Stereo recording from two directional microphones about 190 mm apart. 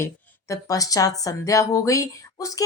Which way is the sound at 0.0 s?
15° left (ahead or behind).